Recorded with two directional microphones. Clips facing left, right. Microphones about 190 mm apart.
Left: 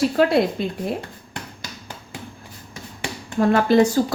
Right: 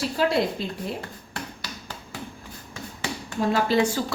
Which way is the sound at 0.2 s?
60° left (ahead or behind).